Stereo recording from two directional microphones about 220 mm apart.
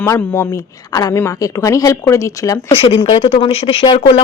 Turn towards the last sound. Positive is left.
turn(degrees=25)  # may be behind; listen again after turning